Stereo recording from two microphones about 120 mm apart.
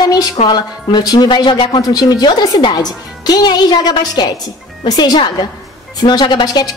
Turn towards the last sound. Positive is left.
turn(degrees=35)  # may be behind; listen again after turning